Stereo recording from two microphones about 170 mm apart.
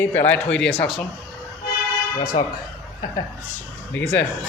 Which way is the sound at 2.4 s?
25° left (ahead or behind).